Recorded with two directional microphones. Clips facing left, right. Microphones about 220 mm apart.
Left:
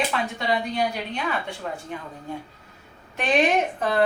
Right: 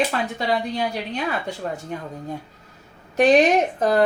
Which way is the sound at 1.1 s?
40° right (ahead or behind).